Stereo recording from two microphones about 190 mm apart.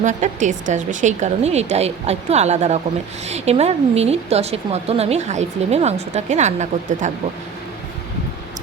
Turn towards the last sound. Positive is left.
turn(degrees=-40)  # may be behind; listen again after turning